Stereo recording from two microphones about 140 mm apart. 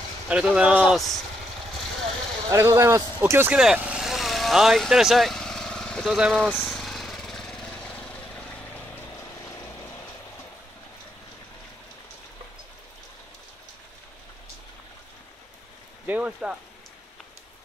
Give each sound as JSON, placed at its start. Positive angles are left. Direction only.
{"t": 0.3, "sound": "speech", "side_deg": -5}
{"t": 2.5, "sound": "a man's voice", "side_deg": -20}
{"t": 3.5, "sound": "vehicle", "side_deg": -10}
{"t": 6.1, "sound": "speech", "side_deg": 0}
{"t": 6.6, "sound": "lawn mower", "side_deg": 0}
{"t": 16.1, "sound": "speech", "side_deg": -10}